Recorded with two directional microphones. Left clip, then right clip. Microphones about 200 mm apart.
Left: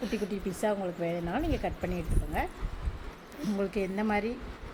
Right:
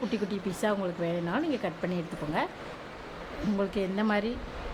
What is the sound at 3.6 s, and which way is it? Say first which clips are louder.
Speech: right 1 dB; centre (ahead or behind).